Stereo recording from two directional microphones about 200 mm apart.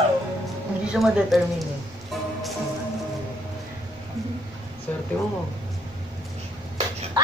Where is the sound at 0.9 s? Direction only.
Centre (ahead or behind).